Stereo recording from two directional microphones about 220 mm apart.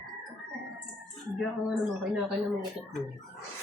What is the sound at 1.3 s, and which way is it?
Speech, centre (ahead or behind).